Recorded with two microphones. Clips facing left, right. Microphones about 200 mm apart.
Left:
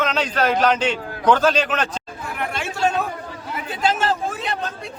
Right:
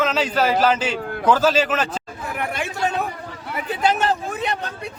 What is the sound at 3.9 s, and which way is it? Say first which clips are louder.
Vehicle: even; 20° right (ahead or behind).